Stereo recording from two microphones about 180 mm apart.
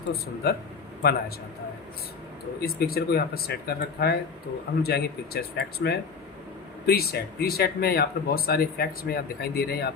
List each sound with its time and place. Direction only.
0.4 s speech: 60° left (ahead or behind)
2.6 s speech: 60° left (ahead or behind)